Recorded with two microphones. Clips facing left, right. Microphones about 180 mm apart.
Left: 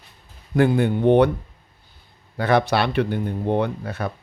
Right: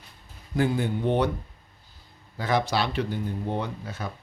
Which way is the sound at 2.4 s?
65° left (ahead or behind).